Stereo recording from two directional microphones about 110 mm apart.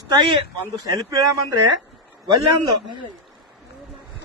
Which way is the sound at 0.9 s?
30° right (ahead or behind).